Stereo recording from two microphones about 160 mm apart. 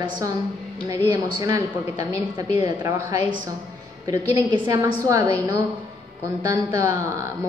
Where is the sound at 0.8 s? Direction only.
25° right (ahead or behind).